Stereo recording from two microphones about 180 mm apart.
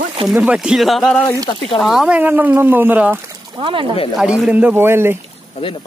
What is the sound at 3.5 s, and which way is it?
Speech, 30° right (ahead or behind).